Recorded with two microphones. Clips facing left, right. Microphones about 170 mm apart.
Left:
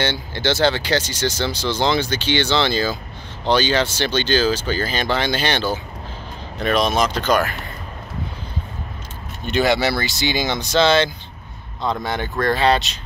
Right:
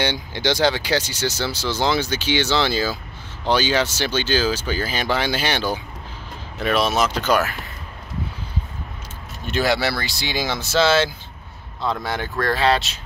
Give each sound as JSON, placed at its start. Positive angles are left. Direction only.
{"t": 0.0, "sound": "speech", "side_deg": -15}
{"t": 9.5, "sound": "speech", "side_deg": 0}